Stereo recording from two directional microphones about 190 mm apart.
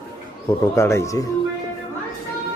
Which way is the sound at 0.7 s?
15° left (ahead or behind).